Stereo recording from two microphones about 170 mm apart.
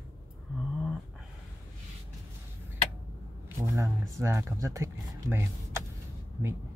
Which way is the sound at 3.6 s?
20° right (ahead or behind).